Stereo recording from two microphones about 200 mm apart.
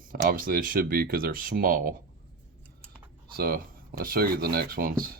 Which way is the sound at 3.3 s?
50° right (ahead or behind).